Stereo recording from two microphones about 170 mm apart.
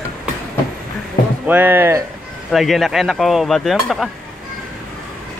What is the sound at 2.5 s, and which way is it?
Speech, centre (ahead or behind).